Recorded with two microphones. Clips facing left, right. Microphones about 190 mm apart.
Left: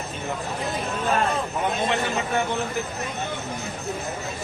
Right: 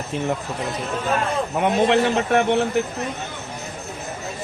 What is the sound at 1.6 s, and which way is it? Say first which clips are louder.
A man's voice: right 9 dB; 80° right.